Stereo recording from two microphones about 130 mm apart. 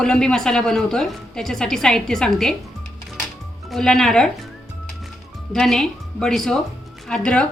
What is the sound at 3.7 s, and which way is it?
Speech, centre (ahead or behind).